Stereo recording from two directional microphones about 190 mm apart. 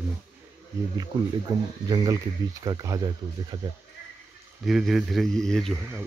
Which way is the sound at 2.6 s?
20° right (ahead or behind).